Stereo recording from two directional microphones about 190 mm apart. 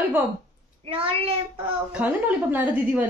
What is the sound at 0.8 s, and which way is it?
Speech, 30° right (ahead or behind).